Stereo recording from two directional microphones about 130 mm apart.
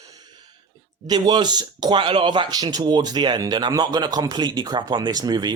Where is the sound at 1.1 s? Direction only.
30° right (ahead or behind).